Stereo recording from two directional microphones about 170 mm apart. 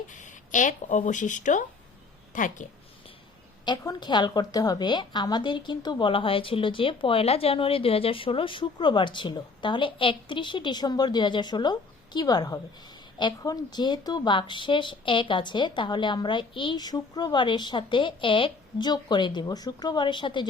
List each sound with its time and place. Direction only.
0.1 s a woman's voice: 50° left (ahead or behind)
3.7 s a woman's voice: 25° left (ahead or behind)